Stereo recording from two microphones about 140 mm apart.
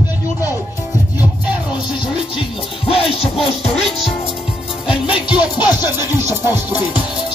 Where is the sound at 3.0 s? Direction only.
40° left (ahead or behind).